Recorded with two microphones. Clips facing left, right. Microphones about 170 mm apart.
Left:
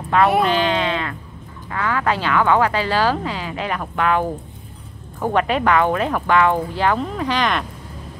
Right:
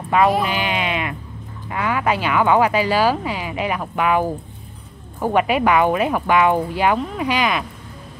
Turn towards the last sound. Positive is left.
turn(degrees=-5)  # may be behind; listen again after turning